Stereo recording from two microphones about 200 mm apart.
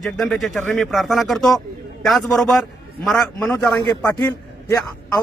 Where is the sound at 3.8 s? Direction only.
20° left (ahead or behind).